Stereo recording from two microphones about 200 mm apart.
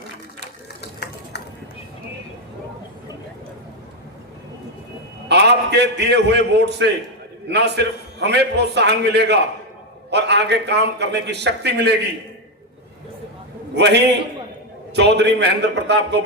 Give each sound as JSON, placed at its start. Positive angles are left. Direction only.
{"t": 0.8, "sound": "a sound", "side_deg": 55}
{"t": 5.3, "sound": "a man's voice", "side_deg": -55}
{"t": 13.7, "sound": "a man's voice", "side_deg": -60}